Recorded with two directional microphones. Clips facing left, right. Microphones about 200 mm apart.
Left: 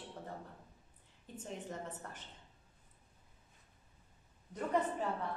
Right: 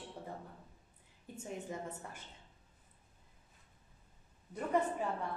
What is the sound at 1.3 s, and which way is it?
Speech, 10° right (ahead or behind).